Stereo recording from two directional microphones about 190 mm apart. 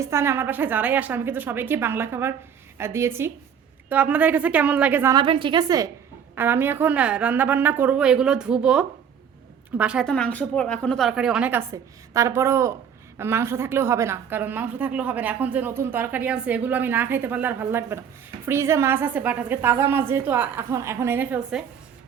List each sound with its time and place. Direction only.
0.0 s a woman's voice: 15° right (ahead or behind)
5.1 s a woman's voice: 25° right (ahead or behind); by 21.6 s 10° right (ahead or behind)